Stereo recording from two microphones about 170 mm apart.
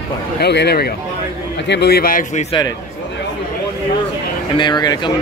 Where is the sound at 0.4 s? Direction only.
75° left (ahead or behind); by 2.4 s 55° left (ahead or behind).